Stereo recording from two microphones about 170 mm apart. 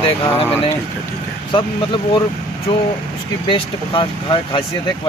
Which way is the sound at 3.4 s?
30° left (ahead or behind).